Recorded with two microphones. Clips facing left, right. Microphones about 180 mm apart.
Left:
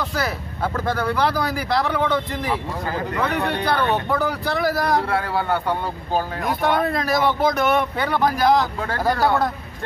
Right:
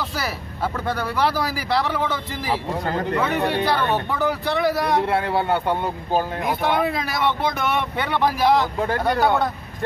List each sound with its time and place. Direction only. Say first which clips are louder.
1.0 s speech: even; 5° right (ahead or behind)
5.0 s speech: right 2 dB; 25° right (ahead or behind)
6.4 s speech: left 1 dB; centre (ahead or behind)